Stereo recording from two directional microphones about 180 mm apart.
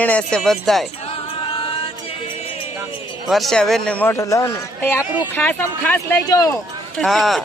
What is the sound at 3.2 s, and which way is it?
A man's voice, centre (ahead or behind).